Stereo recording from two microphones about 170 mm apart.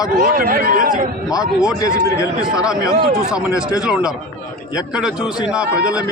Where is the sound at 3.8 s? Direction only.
5° right (ahead or behind).